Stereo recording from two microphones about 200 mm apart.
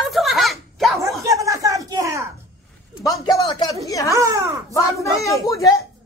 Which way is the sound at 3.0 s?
20° left (ahead or behind).